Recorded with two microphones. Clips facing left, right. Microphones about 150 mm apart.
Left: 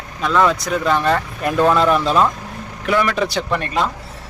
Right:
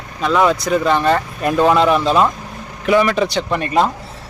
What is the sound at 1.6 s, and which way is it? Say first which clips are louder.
Speech: right 2 dB; 15° right (ahead or behind).